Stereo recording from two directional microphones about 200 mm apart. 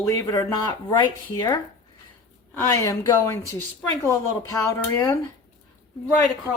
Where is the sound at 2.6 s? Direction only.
15° left (ahead or behind).